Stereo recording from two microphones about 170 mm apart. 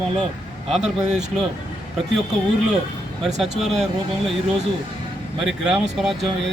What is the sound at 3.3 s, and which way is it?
Speech, centre (ahead or behind).